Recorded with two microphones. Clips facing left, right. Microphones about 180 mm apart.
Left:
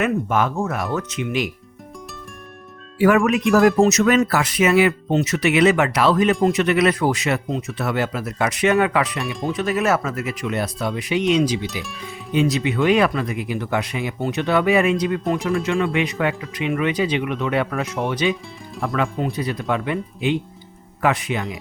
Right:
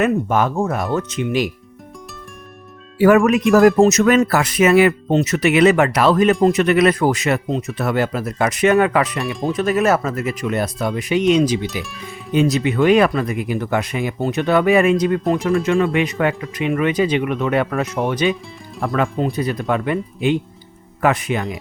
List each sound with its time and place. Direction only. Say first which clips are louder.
0.0 s speech: right 3 dB; 35° right (ahead or behind)
3.0 s speech: right 4 dB; 40° right (ahead or behind)
11.6 s speech: right 3 dB; centre (ahead or behind)
12.3 s speech: right 3 dB; 45° right (ahead or behind)